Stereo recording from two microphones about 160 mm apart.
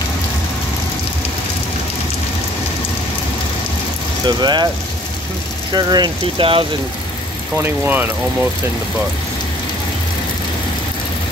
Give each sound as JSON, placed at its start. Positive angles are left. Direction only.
{"t": 4.4, "sound": "speech", "side_deg": -25}
{"t": 5.7, "sound": "speech", "side_deg": -25}
{"t": 7.5, "sound": "speech", "side_deg": -15}